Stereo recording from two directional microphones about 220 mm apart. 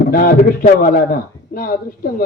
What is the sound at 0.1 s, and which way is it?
A man's voice, 40° left (ahead or behind).